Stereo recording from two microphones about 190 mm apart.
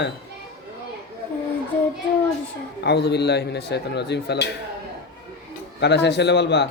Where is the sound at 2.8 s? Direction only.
60° left (ahead or behind).